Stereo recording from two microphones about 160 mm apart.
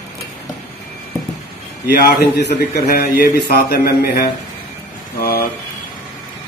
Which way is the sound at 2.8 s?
70° left (ahead or behind).